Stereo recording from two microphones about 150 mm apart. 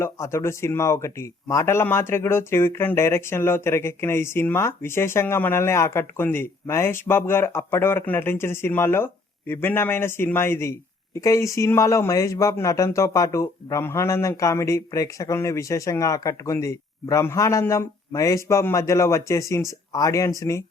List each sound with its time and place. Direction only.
0.0 s speech: 20° left (ahead or behind)